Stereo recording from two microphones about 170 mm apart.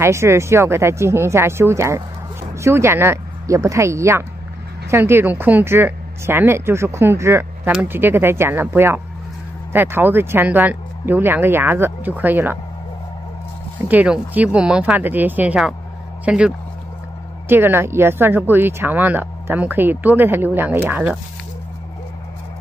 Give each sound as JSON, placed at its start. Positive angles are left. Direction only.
{"t": 0.0, "sound": "speech", "side_deg": -15}
{"t": 13.7, "sound": "speech", "side_deg": -10}